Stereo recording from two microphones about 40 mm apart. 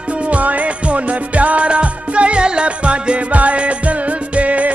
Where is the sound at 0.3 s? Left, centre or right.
Right.